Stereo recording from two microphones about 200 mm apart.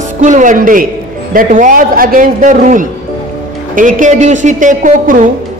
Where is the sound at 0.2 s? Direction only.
40° right (ahead or behind).